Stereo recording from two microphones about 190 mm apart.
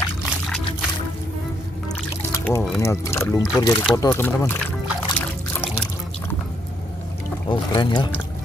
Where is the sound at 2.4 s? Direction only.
10° left (ahead or behind).